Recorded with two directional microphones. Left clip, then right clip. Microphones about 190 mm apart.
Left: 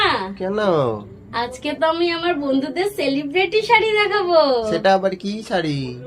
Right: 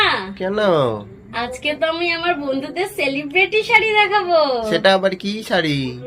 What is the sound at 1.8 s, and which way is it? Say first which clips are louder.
Speech: left 3 dB; 20° left (ahead or behind).